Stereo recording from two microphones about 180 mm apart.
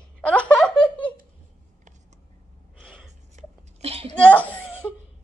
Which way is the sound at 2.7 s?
5° left (ahead or behind).